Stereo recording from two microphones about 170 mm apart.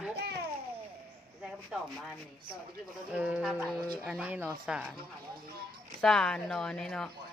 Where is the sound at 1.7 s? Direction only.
5° right (ahead or behind).